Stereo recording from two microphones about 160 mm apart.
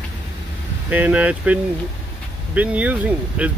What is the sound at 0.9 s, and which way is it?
Speech, 10° right (ahead or behind).